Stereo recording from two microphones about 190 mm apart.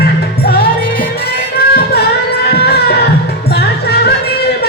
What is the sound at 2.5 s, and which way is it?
Music, 60° left (ahead or behind).